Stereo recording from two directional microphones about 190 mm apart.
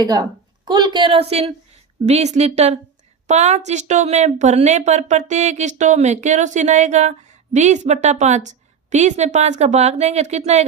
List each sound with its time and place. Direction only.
0.0 s a woman's voice: 20° right (ahead or behind); by 10.7 s 35° right (ahead or behind)